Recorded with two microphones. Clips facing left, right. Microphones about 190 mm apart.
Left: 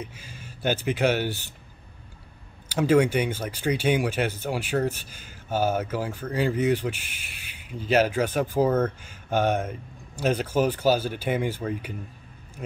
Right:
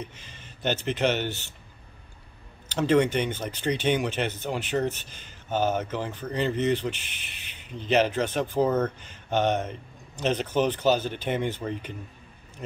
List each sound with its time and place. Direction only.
0.0 s speech: 10° left (ahead or behind)
2.7 s speech: 10° left (ahead or behind)